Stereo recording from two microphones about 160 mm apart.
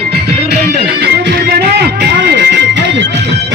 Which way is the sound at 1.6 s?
85° right.